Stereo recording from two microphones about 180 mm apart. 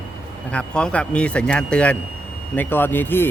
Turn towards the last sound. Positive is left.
turn(degrees=10)  # may be behind; listen again after turning